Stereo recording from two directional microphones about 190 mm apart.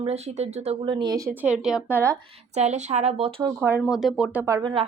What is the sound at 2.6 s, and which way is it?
Speech, 35° right (ahead or behind).